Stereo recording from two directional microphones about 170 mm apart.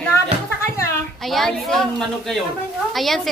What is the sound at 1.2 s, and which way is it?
A woman's voice, centre (ahead or behind).